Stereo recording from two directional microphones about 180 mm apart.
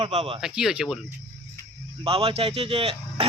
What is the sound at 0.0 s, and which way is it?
Speech, 35° right (ahead or behind).